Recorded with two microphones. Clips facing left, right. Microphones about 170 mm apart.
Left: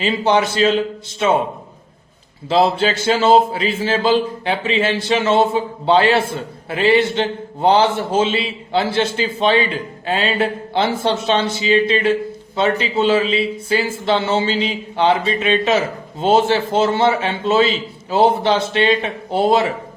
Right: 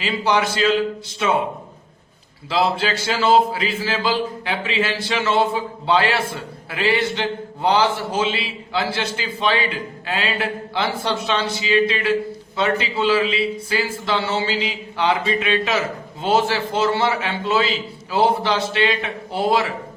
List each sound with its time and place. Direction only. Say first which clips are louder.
0.0 s speech: left 4 dB; 25° left (ahead or behind)
2.5 s speech: left 5 dB; 25° left (ahead or behind)